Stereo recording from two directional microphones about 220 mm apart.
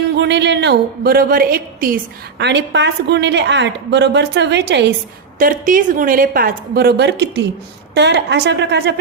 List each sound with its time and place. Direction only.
0.2 s a woman's voice: 50° right (ahead or behind)
2.4 s a woman's voice: 50° right (ahead or behind)
5.4 s a woman's voice: 40° right (ahead or behind)